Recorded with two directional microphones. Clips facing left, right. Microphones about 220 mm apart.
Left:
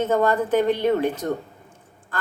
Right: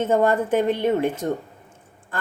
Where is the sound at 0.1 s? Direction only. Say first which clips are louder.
Right 2 dB; 25° right (ahead or behind).